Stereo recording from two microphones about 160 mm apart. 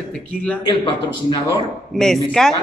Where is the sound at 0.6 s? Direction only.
30° left (ahead or behind).